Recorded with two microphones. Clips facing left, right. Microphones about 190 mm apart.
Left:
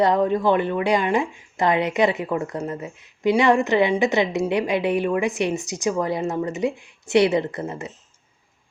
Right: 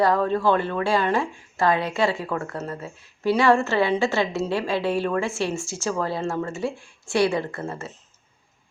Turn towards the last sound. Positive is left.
turn(degrees=20)  # may be behind; listen again after turning